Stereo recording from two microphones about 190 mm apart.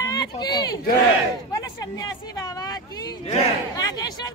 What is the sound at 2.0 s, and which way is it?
Speech, 20° left (ahead or behind).